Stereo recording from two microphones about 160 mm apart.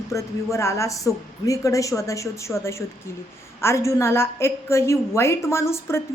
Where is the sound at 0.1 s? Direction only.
20° left (ahead or behind).